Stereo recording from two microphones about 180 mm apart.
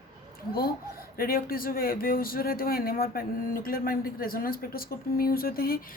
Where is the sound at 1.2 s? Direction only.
55° left (ahead or behind).